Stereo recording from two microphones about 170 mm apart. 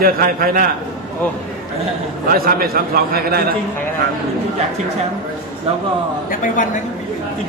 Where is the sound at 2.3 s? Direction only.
60° right (ahead or behind).